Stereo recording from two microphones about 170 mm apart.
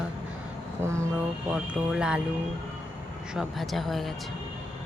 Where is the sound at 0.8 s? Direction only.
15° right (ahead or behind).